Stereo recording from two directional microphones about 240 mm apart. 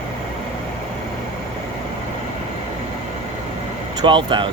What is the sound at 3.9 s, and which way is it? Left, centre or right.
Speech, centre.